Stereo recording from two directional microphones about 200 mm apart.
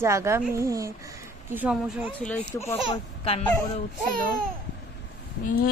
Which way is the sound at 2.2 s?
5° left (ahead or behind).